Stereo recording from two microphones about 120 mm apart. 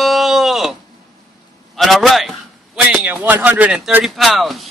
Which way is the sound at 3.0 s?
15° right (ahead or behind).